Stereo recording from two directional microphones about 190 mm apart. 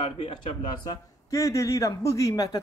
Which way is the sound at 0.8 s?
15° left (ahead or behind).